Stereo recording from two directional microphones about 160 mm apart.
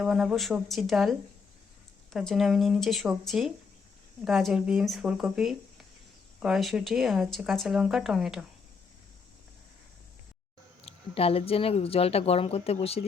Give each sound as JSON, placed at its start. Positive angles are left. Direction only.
{"t": 0.0, "sound": "speech", "side_deg": -5}
{"t": 2.1, "sound": "speech", "side_deg": 0}
{"t": 10.8, "sound": "speech", "side_deg": 40}